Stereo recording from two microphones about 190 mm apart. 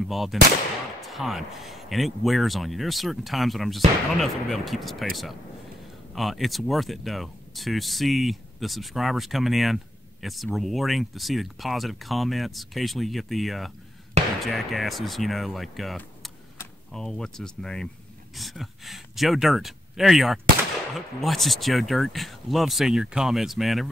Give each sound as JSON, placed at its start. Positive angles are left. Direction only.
{"t": 0.0, "sound": "speech", "side_deg": 0}